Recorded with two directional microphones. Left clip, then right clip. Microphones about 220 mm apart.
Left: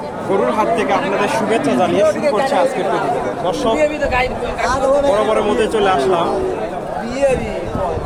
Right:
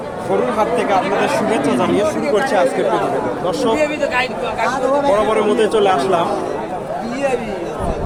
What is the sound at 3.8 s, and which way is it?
Speech, 25° right (ahead or behind).